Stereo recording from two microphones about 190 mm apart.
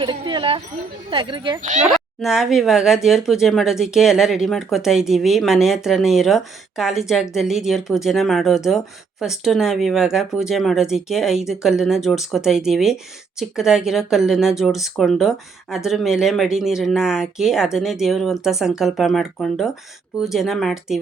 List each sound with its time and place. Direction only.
0.0 s a sound: 25° right (ahead or behind)
1.1 s speech: 25° right (ahead or behind)
1.8 s speech: centre (ahead or behind)